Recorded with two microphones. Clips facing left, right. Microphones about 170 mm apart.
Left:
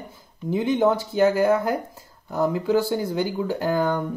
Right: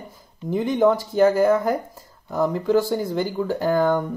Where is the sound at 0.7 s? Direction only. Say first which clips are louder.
Right 5 dB; centre (ahead or behind).